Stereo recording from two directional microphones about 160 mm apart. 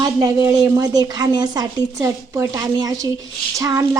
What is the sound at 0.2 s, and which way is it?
Speech, 20° right (ahead or behind).